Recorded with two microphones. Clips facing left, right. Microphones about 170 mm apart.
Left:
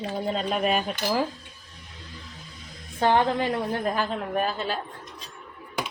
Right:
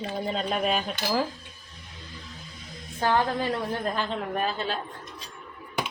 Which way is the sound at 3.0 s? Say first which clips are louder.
Left 3 dB; 25° left (ahead or behind).